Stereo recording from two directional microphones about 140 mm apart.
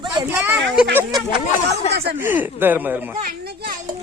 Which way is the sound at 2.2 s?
15° right (ahead or behind).